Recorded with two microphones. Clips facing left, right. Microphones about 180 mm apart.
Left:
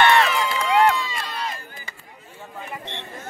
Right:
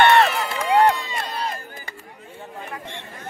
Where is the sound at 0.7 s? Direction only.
35° right (ahead or behind).